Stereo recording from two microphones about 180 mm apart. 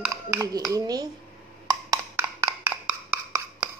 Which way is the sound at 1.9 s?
10° right (ahead or behind).